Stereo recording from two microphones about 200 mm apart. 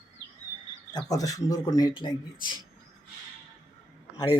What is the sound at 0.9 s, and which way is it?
Speech, 20° left (ahead or behind).